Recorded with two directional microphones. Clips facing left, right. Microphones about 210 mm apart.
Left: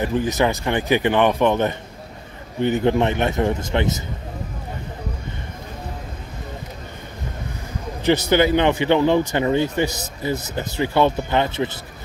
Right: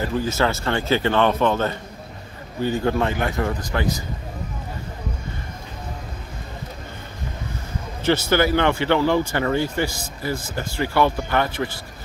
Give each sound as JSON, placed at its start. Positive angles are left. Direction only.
{"t": 0.0, "sound": "a man's voice", "side_deg": 20}
{"t": 8.0, "sound": "speech", "side_deg": 15}